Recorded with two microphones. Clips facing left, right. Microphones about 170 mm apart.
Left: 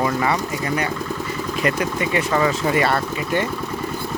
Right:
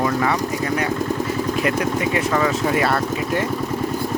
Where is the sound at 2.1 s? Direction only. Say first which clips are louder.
Even; centre (ahead or behind).